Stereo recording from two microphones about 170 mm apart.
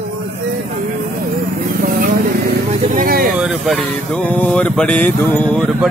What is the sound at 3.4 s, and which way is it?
Speech, centre (ahead or behind).